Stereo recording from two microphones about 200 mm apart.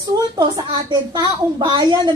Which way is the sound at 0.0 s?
20° right (ahead or behind).